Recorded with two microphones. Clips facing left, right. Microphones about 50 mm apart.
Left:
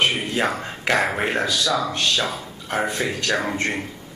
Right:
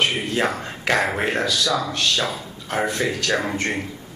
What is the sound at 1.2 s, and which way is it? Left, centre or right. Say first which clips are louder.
A man's voice: even; left.